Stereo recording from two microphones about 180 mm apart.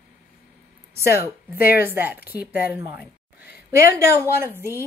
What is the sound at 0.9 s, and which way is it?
Speech, 15° right (ahead or behind).